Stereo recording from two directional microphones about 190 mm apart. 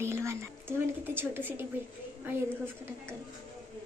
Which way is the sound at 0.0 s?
15° right (ahead or behind).